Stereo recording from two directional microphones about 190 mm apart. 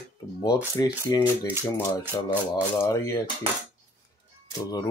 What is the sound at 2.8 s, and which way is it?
Speech, 15° left (ahead or behind).